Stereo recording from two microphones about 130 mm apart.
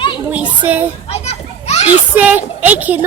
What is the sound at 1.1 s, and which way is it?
Children playing, 55° left (ahead or behind).